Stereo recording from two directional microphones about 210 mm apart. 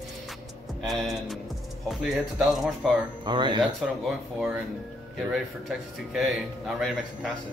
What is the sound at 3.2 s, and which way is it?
Speech, 20° right (ahead or behind).